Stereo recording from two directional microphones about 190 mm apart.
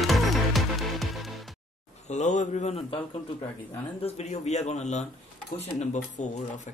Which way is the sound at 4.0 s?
35° left (ahead or behind).